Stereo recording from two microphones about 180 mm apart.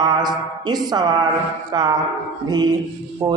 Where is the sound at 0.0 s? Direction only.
25° right (ahead or behind).